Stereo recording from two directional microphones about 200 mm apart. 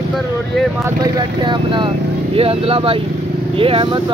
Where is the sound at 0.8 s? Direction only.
20° right (ahead or behind).